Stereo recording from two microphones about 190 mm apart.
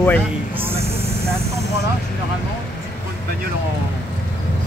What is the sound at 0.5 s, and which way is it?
Speech, 30° right (ahead or behind).